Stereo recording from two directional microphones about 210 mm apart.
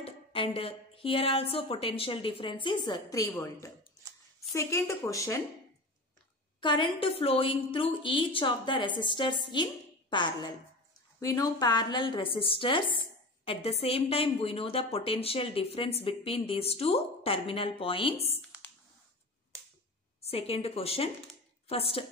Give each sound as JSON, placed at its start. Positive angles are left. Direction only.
{"t": 0.0, "sound": "a sound", "side_deg": 25}
{"t": 0.6, "sound": "a woman's voice", "side_deg": 25}
{"t": 6.6, "sound": "a woman's voice", "side_deg": 25}
{"t": 20.2, "sound": "a woman's voice", "side_deg": 30}